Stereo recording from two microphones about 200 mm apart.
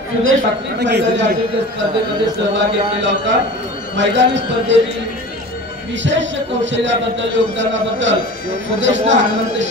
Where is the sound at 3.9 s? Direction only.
65° right (ahead or behind).